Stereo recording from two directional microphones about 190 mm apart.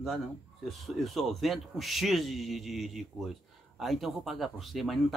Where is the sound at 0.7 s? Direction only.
Centre (ahead or behind).